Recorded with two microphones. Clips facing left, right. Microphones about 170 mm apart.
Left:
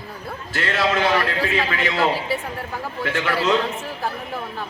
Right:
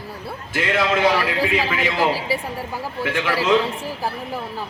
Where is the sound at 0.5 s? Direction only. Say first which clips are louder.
Right 1 dB; 10° right (ahead or behind).